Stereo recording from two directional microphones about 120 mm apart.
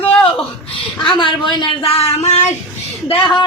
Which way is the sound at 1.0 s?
45° left (ahead or behind).